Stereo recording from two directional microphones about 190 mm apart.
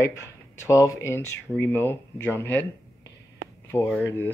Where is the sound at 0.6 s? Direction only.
15° left (ahead or behind).